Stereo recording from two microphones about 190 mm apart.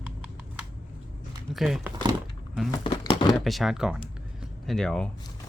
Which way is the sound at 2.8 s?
25° left (ahead or behind).